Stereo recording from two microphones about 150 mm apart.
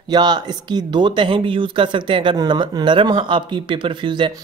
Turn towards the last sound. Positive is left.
turn(degrees=-30)  # may be behind; listen again after turning